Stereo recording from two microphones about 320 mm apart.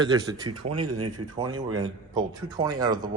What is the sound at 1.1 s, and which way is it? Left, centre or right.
Speech, centre.